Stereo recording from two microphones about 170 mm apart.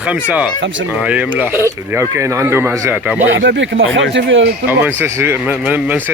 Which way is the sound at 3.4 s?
90° right.